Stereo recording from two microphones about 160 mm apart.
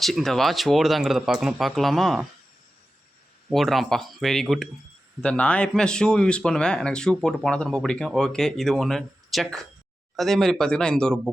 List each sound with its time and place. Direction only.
0.0 s speech: centre (ahead or behind)
3.5 s speech: centre (ahead or behind)